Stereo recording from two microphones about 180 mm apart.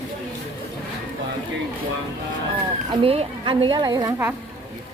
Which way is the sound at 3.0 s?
30° right (ahead or behind).